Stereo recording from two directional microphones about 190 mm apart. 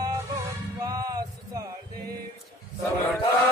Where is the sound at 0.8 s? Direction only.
20° right (ahead or behind).